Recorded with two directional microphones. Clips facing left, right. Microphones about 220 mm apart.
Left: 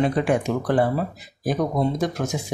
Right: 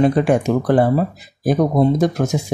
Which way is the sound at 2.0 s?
40° right (ahead or behind).